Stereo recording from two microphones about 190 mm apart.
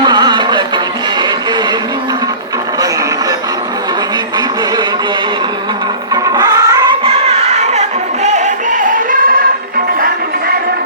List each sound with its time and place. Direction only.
0.0 s music: 25° right (ahead or behind)
6.2 s music: 20° right (ahead or behind); by 9.4 s 50° right (ahead or behind)